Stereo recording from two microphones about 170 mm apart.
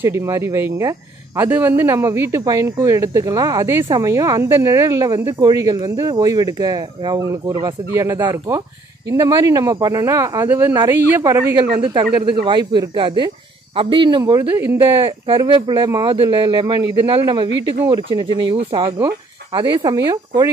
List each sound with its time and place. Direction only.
0.0 s speech: 15° right (ahead or behind)
14.6 s speech: 10° right (ahead or behind)
15.2 s speech: 30° right (ahead or behind)